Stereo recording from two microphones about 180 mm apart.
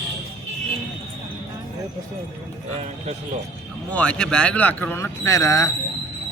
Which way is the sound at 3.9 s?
5° left (ahead or behind).